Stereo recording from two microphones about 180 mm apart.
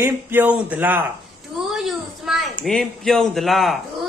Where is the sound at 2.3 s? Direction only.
Centre (ahead or behind).